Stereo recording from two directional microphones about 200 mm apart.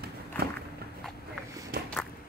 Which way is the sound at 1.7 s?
50° right (ahead or behind).